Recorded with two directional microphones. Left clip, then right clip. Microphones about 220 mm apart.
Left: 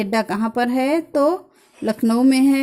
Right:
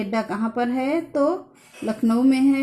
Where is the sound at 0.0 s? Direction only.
40° left (ahead or behind).